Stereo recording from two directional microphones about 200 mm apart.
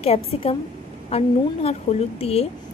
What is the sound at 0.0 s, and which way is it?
A woman's voice, 30° left (ahead or behind).